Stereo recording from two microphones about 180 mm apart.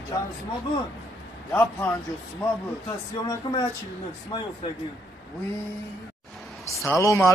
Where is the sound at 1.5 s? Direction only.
10° left (ahead or behind).